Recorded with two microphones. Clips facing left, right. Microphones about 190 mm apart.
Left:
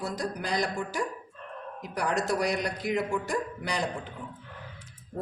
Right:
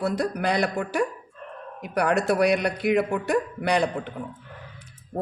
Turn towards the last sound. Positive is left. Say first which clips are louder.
# right 8 dB
turn(degrees=-65)  # may be behind; listen again after turning